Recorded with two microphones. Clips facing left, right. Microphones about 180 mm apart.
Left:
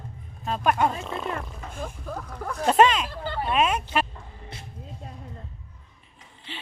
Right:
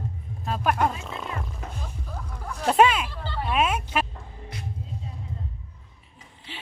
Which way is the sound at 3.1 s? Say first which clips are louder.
Left 4 dB; 50° left (ahead or behind).